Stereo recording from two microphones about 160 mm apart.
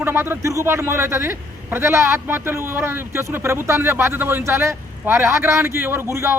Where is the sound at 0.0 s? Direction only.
15° right (ahead or behind).